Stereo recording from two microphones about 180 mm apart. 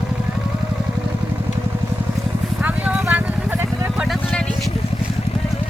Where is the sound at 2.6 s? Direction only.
5° right (ahead or behind).